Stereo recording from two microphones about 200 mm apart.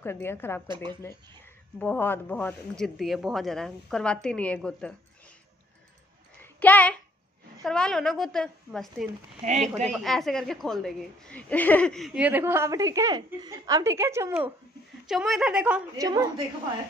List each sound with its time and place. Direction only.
0.0 s a woman's voice: 10° left (ahead or behind)
1.8 s a woman's voice: 10° left (ahead or behind)
6.4 s a woman's voice: 10° left (ahead or behind)
9.4 s speech: 35° right (ahead or behind)
9.8 s a woman's voice: centre (ahead or behind)
15.0 s a woman's voice: centre (ahead or behind)
16.0 s a woman's voice: 20° right (ahead or behind)